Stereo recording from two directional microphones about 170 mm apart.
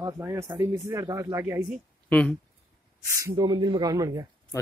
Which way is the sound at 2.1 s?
5° left (ahead or behind).